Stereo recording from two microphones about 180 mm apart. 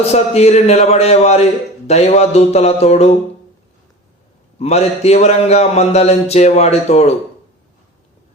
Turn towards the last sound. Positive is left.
turn(degrees=35)  # may be behind; listen again after turning